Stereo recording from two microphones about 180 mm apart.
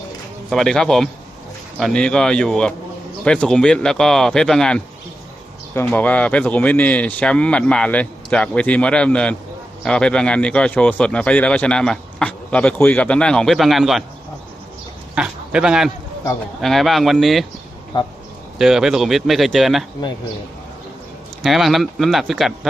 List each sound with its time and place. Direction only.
0.5 s speech: centre (ahead or behind)
15.1 s speech: 5° right (ahead or behind)
17.9 s speech: 25° left (ahead or behind)
18.6 s speech: centre (ahead or behind)
21.4 s speech: centre (ahead or behind)